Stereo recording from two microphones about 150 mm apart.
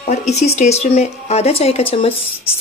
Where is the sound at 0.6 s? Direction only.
50° left (ahead or behind).